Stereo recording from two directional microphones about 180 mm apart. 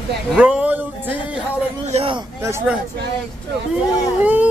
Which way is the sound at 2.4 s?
15° right (ahead or behind).